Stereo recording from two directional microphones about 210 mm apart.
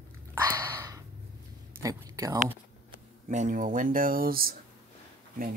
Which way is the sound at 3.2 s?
35° right (ahead or behind).